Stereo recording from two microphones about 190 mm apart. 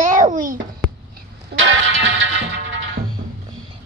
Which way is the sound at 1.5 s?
75° right (ahead or behind).